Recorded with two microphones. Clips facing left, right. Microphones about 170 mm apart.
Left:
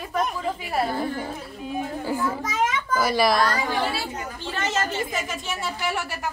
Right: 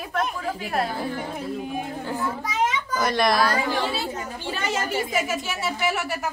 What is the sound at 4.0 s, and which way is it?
A woman's voice, 10° right (ahead or behind).